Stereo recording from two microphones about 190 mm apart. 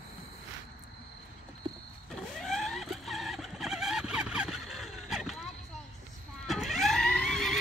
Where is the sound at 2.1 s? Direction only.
Centre (ahead or behind).